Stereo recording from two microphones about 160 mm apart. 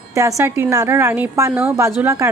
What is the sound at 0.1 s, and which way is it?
A woman's voice, 20° right (ahead or behind).